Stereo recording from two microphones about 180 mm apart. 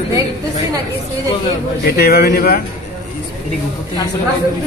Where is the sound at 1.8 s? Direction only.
60° left (ahead or behind).